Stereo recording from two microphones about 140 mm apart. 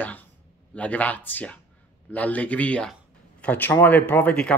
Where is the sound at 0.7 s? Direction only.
10° left (ahead or behind).